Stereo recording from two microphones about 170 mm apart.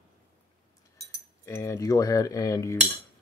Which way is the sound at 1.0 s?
15° left (ahead or behind).